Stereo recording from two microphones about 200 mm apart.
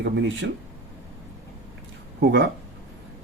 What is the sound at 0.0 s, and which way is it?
Speech, 65° right (ahead or behind).